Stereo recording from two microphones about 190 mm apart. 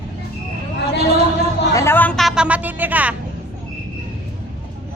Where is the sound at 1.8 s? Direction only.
10° left (ahead or behind); by 3.1 s 10° right (ahead or behind).